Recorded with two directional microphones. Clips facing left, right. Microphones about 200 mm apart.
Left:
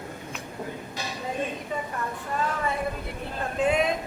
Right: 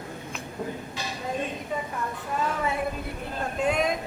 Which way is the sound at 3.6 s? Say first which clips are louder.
Left 2 dB; 5° left (ahead or behind).